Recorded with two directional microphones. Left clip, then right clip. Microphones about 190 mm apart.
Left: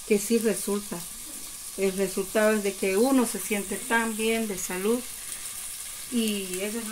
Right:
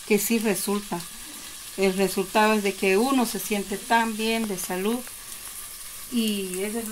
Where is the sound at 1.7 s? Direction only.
45° right (ahead or behind).